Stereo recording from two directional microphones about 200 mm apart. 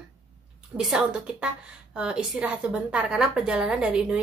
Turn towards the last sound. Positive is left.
turn(degrees=-5)  # may be behind; listen again after turning